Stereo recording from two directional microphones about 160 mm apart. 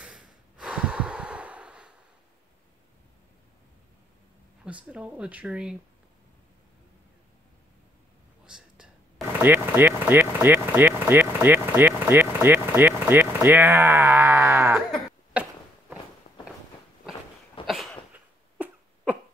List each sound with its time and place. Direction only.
0.0 s breathing: 5° right (ahead or behind)
4.6 s speech: 5° right (ahead or behind)
8.5 s whispering: 5° right (ahead or behind)
9.4 s speech: 15° right (ahead or behind)
15.3 s a sound: 10° right (ahead or behind)
16.3 s walk: 45° left (ahead or behind)
17.6 s a sound: centre (ahead or behind)
18.1 s cough: 10° right (ahead or behind)